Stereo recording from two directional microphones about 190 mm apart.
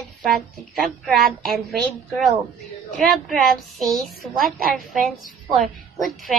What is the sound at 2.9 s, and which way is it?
Child singing, centre (ahead or behind).